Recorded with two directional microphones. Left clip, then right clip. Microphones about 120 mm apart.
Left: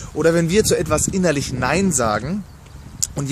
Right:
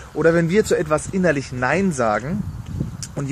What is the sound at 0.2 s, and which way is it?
Speech, 20° left (ahead or behind).